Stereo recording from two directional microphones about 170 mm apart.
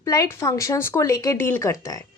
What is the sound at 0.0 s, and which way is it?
Speech, 20° left (ahead or behind).